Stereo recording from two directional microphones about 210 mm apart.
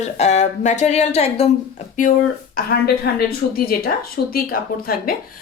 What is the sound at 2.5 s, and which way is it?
A woman's voice, 45° left (ahead or behind).